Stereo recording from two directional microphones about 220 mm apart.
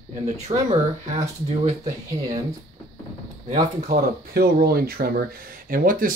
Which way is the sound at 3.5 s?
40° right (ahead or behind).